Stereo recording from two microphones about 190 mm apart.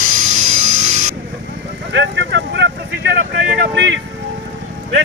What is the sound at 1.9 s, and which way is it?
Vehicle, 70° right (ahead or behind).